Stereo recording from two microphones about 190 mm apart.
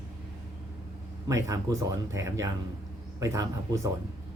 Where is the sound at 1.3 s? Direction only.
15° right (ahead or behind).